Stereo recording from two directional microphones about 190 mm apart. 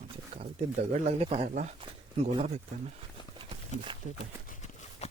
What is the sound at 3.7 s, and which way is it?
Speech, 40° left (ahead or behind).